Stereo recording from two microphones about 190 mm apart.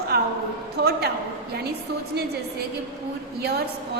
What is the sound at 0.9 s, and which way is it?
Speech, 60° right (ahead or behind).